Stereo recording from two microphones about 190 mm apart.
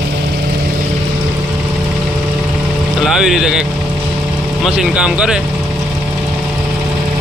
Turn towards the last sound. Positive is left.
turn(degrees=-5)  # may be behind; listen again after turning